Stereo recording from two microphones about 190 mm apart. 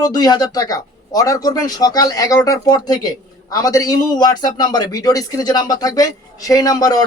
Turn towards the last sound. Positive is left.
turn(degrees=20)  # may be behind; listen again after turning